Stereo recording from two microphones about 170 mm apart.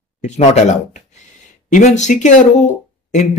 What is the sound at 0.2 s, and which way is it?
Speech, 45° left (ahead or behind).